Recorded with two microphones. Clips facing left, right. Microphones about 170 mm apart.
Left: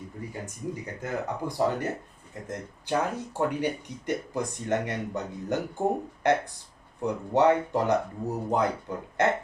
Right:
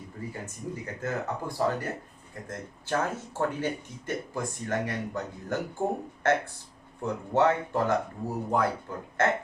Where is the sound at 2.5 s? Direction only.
15° left (ahead or behind).